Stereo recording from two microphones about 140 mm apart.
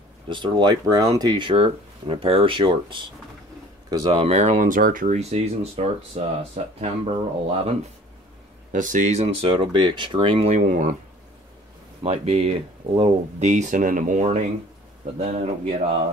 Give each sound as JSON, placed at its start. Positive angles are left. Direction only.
{"t": 0.3, "sound": "speech", "side_deg": -35}
{"t": 4.1, "sound": "speech", "side_deg": -45}
{"t": 8.7, "sound": "speech", "side_deg": -65}
{"t": 12.0, "sound": "speech", "side_deg": -45}